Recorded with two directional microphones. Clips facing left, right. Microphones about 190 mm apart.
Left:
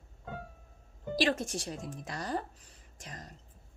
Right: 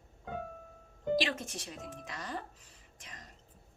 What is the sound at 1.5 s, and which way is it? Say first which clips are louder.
Speech: left 5 dB; 35° left (ahead or behind).